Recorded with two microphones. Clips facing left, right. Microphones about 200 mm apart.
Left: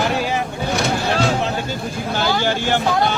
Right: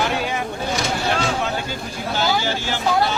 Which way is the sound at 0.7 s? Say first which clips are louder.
Left 3 dB; 60° left (ahead or behind).